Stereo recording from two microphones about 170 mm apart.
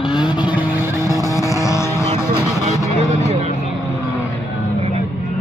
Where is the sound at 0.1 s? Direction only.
25° left (ahead or behind).